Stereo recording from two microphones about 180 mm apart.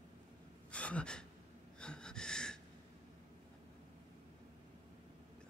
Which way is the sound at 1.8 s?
5° left (ahead or behind).